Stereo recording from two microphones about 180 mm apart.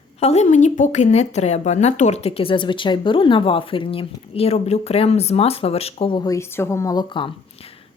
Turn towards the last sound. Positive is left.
turn(degrees=25)  # may be behind; listen again after turning